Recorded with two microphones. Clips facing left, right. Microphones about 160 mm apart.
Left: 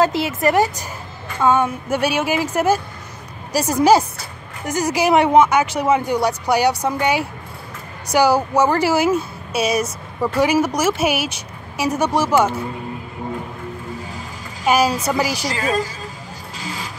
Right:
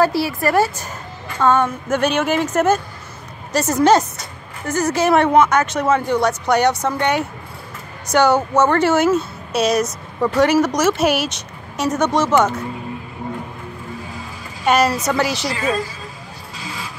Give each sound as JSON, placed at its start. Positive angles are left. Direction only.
{"t": 0.0, "sound": "a woman's voice", "side_deg": 20}
{"t": 14.6, "sound": "a woman's voice", "side_deg": 5}